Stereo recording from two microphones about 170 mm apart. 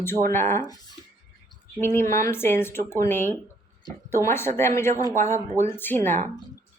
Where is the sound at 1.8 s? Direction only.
15° left (ahead or behind).